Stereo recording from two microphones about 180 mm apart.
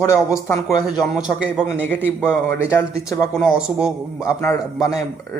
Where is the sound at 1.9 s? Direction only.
10° left (ahead or behind).